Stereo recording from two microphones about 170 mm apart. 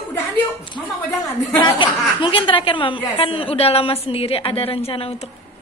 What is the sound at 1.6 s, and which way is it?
Speech, 30° left (ahead or behind).